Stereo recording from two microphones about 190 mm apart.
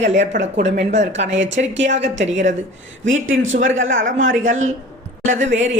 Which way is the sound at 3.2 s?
90° right.